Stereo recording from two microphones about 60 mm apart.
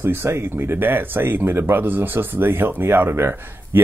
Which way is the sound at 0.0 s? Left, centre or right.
Right.